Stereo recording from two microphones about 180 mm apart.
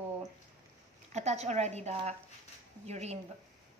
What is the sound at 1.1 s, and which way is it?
A woman's voice, 40° right (ahead or behind).